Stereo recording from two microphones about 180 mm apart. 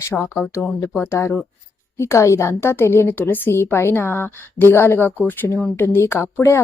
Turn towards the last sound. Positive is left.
turn(degrees=15)  # may be behind; listen again after turning